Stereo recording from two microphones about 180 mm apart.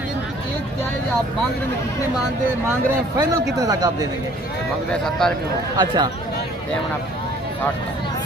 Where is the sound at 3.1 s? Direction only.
20° right (ahead or behind).